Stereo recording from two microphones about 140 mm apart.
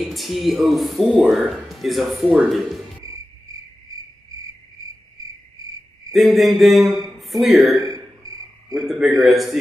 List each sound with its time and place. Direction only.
0.0 s speech: centre (ahead or behind)
6.1 s speech: centre (ahead or behind)
7.7 s a sound: 25° right (ahead or behind)
9.2 s speech: centre (ahead or behind)